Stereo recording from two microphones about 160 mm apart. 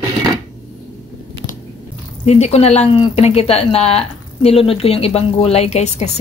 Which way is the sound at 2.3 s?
40° left (ahead or behind).